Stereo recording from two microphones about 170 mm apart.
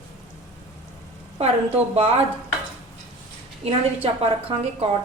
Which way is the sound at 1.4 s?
35° right (ahead or behind).